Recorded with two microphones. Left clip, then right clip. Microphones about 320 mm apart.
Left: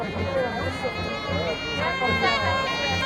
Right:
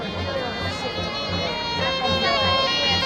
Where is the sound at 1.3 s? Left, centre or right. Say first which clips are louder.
Right 1 dB; right.